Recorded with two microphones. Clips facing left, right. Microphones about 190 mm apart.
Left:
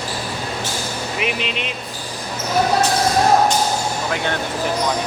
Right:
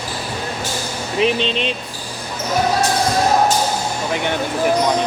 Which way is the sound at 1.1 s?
30° right (ahead or behind).